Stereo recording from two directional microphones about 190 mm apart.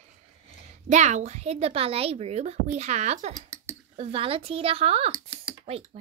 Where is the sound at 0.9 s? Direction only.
40° right (ahead or behind).